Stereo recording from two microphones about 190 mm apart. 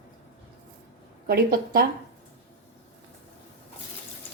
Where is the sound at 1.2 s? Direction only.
50° right (ahead or behind).